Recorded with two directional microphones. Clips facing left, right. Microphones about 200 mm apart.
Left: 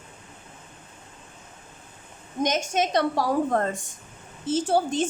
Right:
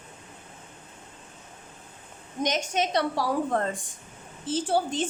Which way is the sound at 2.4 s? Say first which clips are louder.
Left 2 dB; 50° left (ahead or behind).